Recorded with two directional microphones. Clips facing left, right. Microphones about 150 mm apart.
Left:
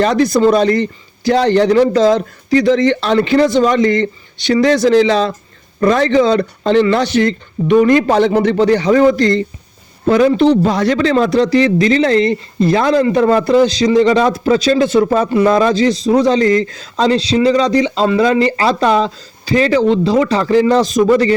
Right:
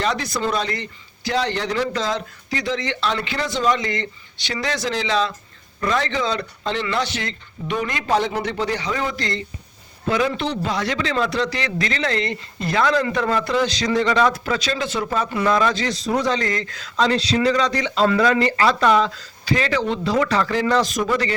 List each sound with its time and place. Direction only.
0.0 s speech: 45° left (ahead or behind)
8.1 s speech: 65° left (ahead or behind); by 9.4 s 50° left (ahead or behind)
10.1 s a man's voice: 40° left (ahead or behind)
14.8 s a man's voice: 45° left (ahead or behind)